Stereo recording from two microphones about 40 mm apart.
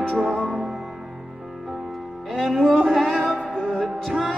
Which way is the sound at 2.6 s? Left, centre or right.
Centre.